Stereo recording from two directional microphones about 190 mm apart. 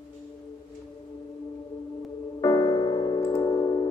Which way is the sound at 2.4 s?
20° left (ahead or behind).